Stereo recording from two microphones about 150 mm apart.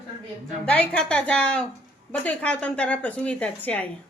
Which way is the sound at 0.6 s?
10° left (ahead or behind).